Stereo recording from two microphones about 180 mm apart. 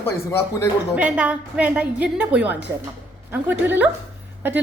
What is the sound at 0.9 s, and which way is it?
A woman's voice, 5° right (ahead or behind).